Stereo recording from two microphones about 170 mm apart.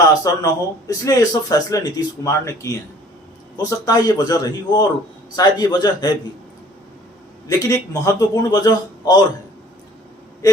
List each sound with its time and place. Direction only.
0.3 s speech: 20° left (ahead or behind)
7.4 s speech: 20° left (ahead or behind)